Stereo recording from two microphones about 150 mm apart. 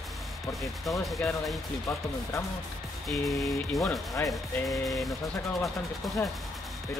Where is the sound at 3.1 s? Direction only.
Centre (ahead or behind).